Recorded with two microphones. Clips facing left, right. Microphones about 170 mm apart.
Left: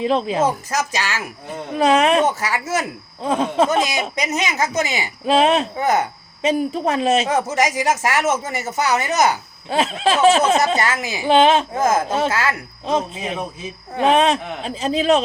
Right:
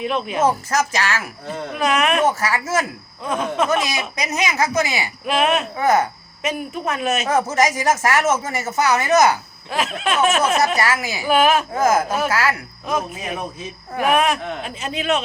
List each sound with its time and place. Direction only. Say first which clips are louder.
0.0 s speech: left 3 dB; 30° left (ahead or behind)
0.7 s speech: right 2 dB; 15° left (ahead or behind)
1.7 s speech: left 5 dB; 30° left (ahead or behind)
2.4 s speech: right 1 dB; 20° left (ahead or behind)
3.2 s speech: left 3 dB; 30° left (ahead or behind)
7.3 s speech: right 1 dB; 15° left (ahead or behind); by 15.2 s 30° left (ahead or behind)